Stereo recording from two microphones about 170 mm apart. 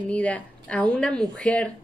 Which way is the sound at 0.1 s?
5° left (ahead or behind).